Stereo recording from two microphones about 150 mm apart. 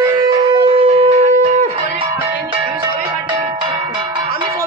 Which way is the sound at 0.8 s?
40° right (ahead or behind).